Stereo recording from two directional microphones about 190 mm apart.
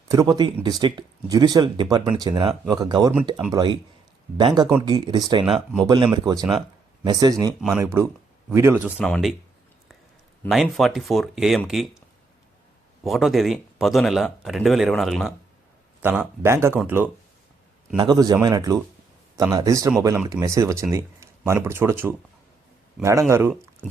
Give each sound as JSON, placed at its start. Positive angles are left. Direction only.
{"t": 0.1, "sound": "speech", "side_deg": -20}
{"t": 5.5, "sound": "speech", "side_deg": 0}
{"t": 5.8, "sound": "speech", "side_deg": -25}
{"t": 7.6, "sound": "speech", "side_deg": 0}
{"t": 8.5, "sound": "speech", "side_deg": -15}
{"t": 9.0, "sound": "speech", "side_deg": 5}
{"t": 10.4, "sound": "speech", "side_deg": 0}
{"t": 13.1, "sound": "speech", "side_deg": 0}